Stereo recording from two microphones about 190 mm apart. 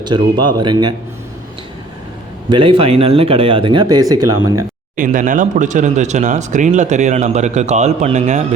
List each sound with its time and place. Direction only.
0.0 s speech: 25° right (ahead or behind)
2.5 s speech: 25° right (ahead or behind)
4.9 s speech: 45° right (ahead or behind)